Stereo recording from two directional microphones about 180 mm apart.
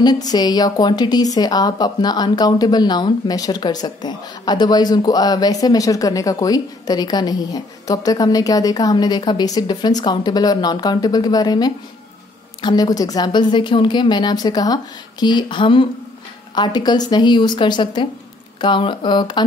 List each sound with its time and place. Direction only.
0.0 s speech: 20° left (ahead or behind)